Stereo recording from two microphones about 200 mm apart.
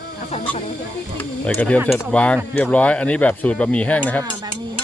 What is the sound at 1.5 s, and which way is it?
Speech, 5° left (ahead or behind).